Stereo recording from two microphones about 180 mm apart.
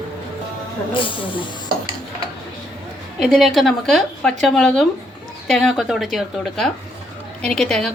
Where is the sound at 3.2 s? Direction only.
Centre (ahead or behind).